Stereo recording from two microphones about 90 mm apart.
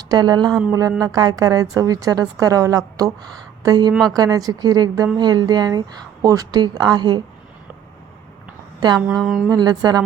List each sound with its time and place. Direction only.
0.1 s a woman's voice: 50° right (ahead or behind)
0.7 s a woman's voice: 40° right (ahead or behind)
9.1 s speech: 5° right (ahead or behind)
9.6 s a woman's voice: 50° right (ahead or behind)